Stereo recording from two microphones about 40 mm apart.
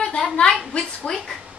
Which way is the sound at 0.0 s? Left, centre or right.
Centre.